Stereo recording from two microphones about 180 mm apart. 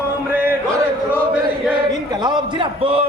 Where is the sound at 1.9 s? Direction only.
25° right (ahead or behind).